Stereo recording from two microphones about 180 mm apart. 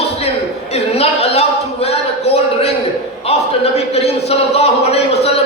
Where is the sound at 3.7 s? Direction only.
35° left (ahead or behind).